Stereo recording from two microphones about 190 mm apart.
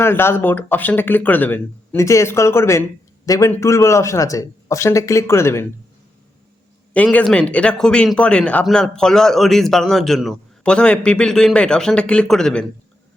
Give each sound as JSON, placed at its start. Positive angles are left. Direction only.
{"t": 0.0, "sound": "speech", "side_deg": 10}
{"t": 6.9, "sound": "speech", "side_deg": 5}